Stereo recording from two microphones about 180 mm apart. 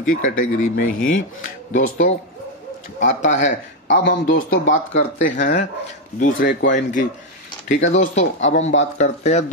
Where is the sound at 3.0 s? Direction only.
90° left.